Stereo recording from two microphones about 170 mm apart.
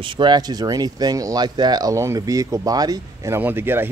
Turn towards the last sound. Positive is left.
turn(degrees=-10)  # may be behind; listen again after turning